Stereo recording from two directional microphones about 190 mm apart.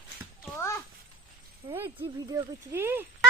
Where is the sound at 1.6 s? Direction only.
25° right (ahead or behind).